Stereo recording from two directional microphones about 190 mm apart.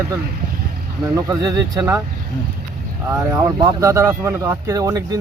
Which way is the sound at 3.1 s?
15° right (ahead or behind).